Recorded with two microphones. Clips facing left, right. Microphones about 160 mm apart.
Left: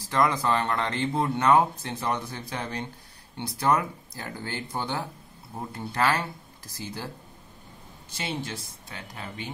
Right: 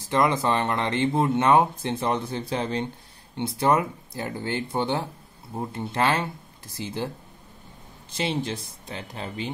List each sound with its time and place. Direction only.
0.0 s speech: 25° right (ahead or behind)
8.2 s speech: 25° right (ahead or behind)